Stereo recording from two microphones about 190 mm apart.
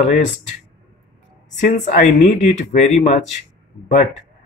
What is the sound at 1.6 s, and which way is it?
Speech, 40° left (ahead or behind).